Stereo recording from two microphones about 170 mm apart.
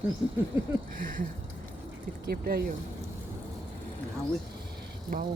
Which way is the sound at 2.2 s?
60° right (ahead or behind).